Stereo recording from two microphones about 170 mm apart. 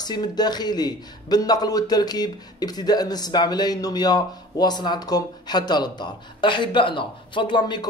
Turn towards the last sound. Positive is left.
turn(degrees=25)  # may be behind; listen again after turning